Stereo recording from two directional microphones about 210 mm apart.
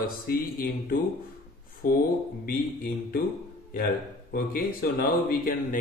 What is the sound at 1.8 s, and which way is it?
Speech, 45° left (ahead or behind).